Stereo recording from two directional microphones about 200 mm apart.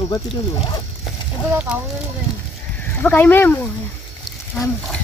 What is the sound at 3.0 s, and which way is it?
Speech, 10° left (ahead or behind).